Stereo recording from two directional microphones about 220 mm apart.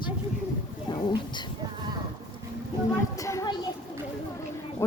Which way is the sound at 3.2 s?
15° left (ahead or behind).